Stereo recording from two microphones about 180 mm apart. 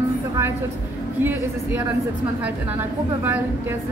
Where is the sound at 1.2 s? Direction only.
10° right (ahead or behind).